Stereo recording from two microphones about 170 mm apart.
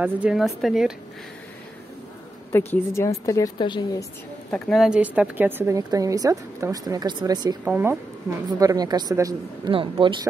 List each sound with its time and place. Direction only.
0.0 s speech: 5° right (ahead or behind)
2.5 s a woman's voice: 15° left (ahead or behind)
4.5 s a woman's voice: centre (ahead or behind); by 7.5 s 25° right (ahead or behind)
7.6 s speech: 10° right (ahead or behind)
8.5 s a woman's voice: 20° right (ahead or behind)